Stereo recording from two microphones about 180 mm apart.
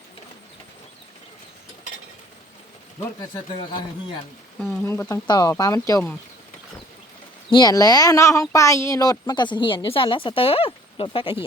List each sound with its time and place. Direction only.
3.2 s speech: 25° left (ahead or behind)
4.6 s speech: 10° left (ahead or behind)
7.5 s speech: 20° left (ahead or behind)